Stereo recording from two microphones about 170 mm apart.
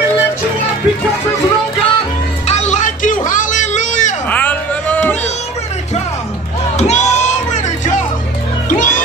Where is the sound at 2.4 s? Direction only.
45° left (ahead or behind).